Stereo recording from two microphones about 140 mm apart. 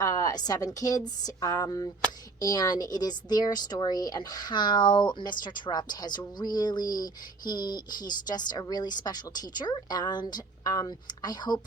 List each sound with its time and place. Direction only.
0.0 s speech: 30° left (ahead or behind)